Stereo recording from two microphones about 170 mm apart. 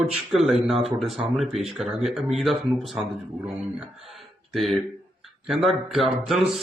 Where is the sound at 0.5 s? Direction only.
35° right (ahead or behind).